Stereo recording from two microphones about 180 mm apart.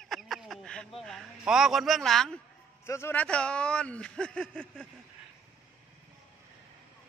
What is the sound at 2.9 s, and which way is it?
Speech, 15° left (ahead or behind).